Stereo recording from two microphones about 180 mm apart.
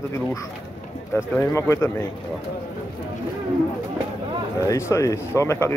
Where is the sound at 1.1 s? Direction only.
15° left (ahead or behind).